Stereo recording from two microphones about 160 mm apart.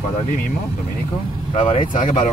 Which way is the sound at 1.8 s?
55° left (ahead or behind).